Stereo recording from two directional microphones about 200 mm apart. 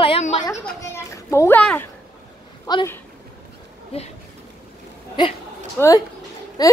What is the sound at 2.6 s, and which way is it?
Speech, 20° left (ahead or behind).